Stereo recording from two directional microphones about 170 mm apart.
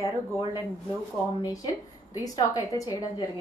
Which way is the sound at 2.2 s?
20° left (ahead or behind).